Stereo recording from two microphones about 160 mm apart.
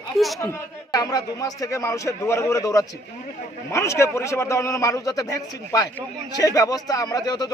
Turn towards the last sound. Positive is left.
turn(degrees=25)  # may be behind; listen again after turning